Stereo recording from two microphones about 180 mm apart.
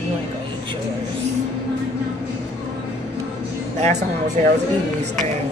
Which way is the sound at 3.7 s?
40° right (ahead or behind).